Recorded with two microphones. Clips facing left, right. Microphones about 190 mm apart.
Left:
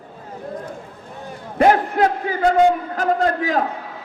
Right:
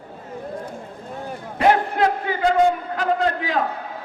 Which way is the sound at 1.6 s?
40° left (ahead or behind).